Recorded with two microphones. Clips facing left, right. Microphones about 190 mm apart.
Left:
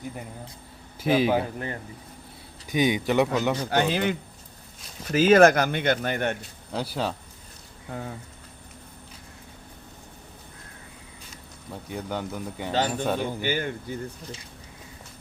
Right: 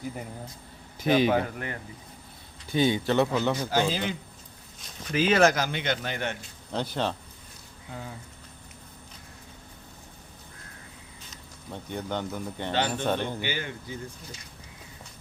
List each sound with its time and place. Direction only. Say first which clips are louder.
0.9 s a man's voice: left 1 dB; 5° left (ahead or behind)
1.5 s speech: left 3 dB; 30° left (ahead or behind)
2.6 s speech: left 1 dB; 15° left (ahead or behind)
3.7 s speech: left 3 dB; 60° left (ahead or behind)
5.1 s speech: left 5 dB; 45° left (ahead or behind)
6.7 s speech: even; 5° left (ahead or behind)
7.9 s speech: left 5 dB; 50° left (ahead or behind)
11.3 s speech: even; 5° left (ahead or behind)
13.4 s speech: left 5 dB; 50° left (ahead or behind)